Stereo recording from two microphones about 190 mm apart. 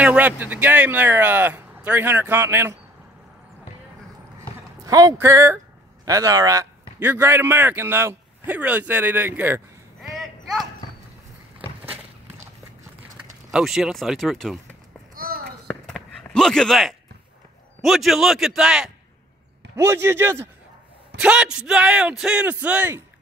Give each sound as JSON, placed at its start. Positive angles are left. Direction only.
{"t": 0.0, "sound": "a man's voice", "side_deg": -5}
{"t": 4.8, "sound": "a man's voice", "side_deg": -20}
{"t": 10.2, "sound": "a sound", "side_deg": 0}
{"t": 13.5, "sound": "speech", "side_deg": 0}
{"t": 15.1, "sound": "a sound", "side_deg": -50}
{"t": 15.6, "sound": "chop", "side_deg": 0}
{"t": 17.8, "sound": "speech", "side_deg": 0}
{"t": 19.7, "sound": "a man's voice", "side_deg": -15}